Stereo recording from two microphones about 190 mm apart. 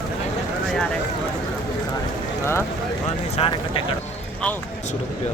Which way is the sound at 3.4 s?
30° left (ahead or behind).